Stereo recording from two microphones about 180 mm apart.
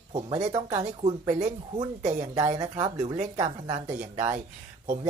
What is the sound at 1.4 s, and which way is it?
Speech, 40° right (ahead or behind).